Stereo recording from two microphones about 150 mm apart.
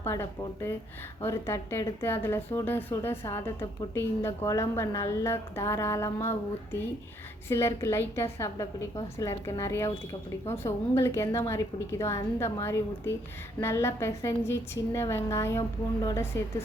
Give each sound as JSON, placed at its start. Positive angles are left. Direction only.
{"t": 0.0, "sound": "a woman's voice", "side_deg": 15}